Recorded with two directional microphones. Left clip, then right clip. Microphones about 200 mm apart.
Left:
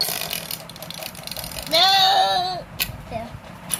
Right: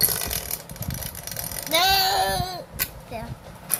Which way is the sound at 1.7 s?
30° right (ahead or behind).